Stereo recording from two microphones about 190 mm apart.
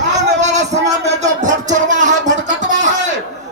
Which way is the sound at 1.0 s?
40° right (ahead or behind).